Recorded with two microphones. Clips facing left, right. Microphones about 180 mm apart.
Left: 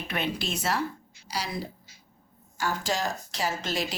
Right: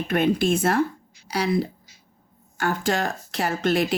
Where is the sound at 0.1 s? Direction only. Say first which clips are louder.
Right 11 dB; 50° right (ahead or behind).